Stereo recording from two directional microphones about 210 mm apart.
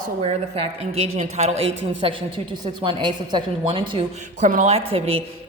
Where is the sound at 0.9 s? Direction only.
30° right (ahead or behind).